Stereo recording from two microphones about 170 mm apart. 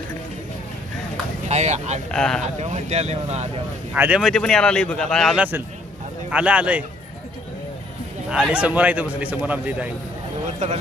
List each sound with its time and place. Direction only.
1.5 s speech: 40° right (ahead or behind)
2.0 s speech: 5° left (ahead or behind)
2.4 s speech: 40° right (ahead or behind)
3.9 s a man's voice: 5° right (ahead or behind)
8.3 s a man's voice: 5° right (ahead or behind)